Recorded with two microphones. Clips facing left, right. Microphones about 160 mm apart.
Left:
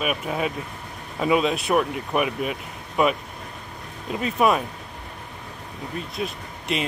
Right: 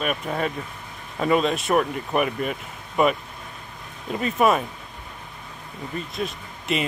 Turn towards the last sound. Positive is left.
turn(degrees=0)  # may be behind; listen again after turning